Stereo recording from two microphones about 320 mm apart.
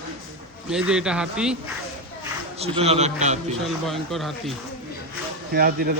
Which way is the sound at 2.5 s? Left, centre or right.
Centre.